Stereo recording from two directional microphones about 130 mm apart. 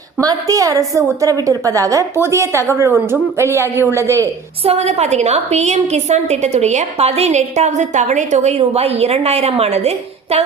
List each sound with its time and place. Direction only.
0.2 s a woman's voice: 25° right (ahead or behind)
4.6 s a woman's voice: 50° right (ahead or behind)